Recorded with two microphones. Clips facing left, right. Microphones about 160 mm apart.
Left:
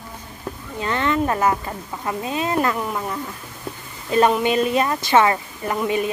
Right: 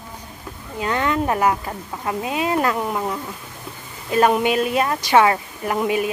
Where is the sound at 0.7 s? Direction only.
10° right (ahead or behind).